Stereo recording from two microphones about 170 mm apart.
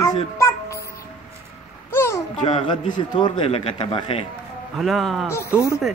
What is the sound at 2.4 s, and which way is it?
A man's voice, 30° left (ahead or behind).